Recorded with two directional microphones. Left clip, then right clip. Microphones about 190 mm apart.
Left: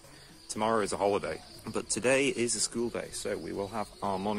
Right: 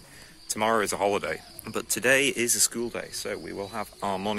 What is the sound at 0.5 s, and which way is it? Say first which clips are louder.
Speech: right 4 dB; 10° right (ahead or behind).